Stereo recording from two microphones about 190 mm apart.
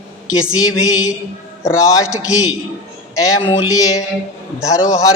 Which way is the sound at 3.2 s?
15° left (ahead or behind).